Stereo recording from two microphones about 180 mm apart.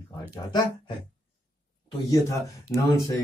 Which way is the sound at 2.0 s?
20° left (ahead or behind).